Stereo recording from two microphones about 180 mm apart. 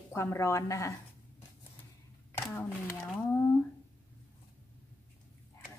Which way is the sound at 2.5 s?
10° left (ahead or behind).